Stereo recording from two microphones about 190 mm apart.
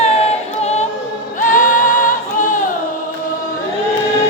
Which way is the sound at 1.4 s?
45° left (ahead or behind).